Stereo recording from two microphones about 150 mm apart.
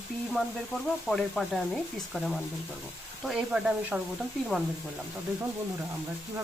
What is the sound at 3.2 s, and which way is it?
Speech, 5° right (ahead or behind).